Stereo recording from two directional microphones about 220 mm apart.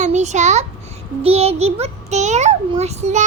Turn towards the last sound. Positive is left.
turn(degrees=-30)  # may be behind; listen again after turning